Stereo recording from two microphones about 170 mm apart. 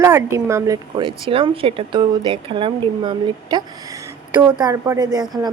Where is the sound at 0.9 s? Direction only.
30° right (ahead or behind).